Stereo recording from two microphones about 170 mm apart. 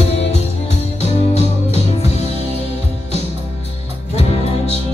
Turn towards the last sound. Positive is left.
turn(degrees=40)  # may be behind; listen again after turning